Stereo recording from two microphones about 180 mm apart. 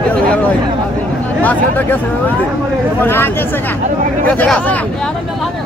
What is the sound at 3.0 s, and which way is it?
Speech, 10° left (ahead or behind).